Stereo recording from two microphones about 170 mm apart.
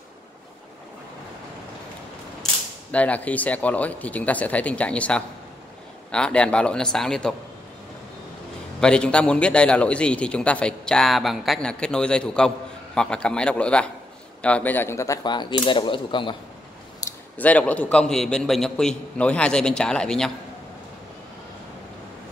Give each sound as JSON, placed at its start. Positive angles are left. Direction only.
{"t": 2.9, "sound": "a man's voice", "side_deg": 10}
{"t": 8.8, "sound": "a man's voice", "side_deg": 5}
{"t": 17.0, "sound": "a sound", "side_deg": 20}
{"t": 17.4, "sound": "a man's voice", "side_deg": 10}